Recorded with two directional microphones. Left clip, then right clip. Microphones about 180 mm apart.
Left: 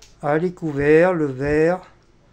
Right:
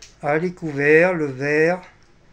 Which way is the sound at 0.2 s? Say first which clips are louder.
Left 1 dB; 25° left (ahead or behind).